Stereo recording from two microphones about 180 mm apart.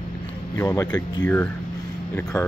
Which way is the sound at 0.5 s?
15° left (ahead or behind).